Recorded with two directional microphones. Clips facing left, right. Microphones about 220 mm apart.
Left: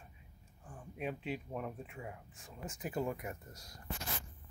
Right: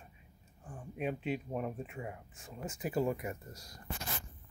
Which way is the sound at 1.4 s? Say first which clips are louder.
Right 4 dB; 20° right (ahead or behind).